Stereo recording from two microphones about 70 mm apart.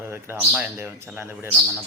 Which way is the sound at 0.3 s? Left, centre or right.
Right.